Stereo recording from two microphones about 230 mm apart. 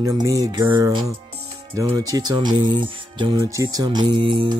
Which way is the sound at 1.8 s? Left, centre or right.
Centre.